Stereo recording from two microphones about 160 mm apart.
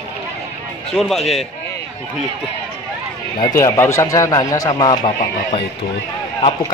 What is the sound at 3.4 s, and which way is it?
Speech, 20° left (ahead or behind).